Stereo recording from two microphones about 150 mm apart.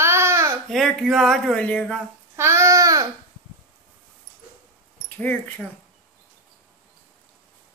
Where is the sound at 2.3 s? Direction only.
20° right (ahead or behind).